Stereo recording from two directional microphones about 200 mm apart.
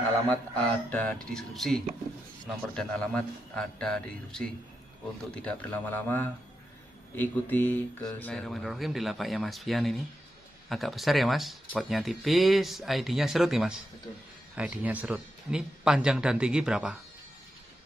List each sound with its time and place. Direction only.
0.3 s a man's voice: 5° left (ahead or behind)